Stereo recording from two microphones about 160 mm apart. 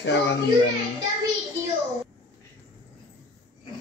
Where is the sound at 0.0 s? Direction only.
90° left.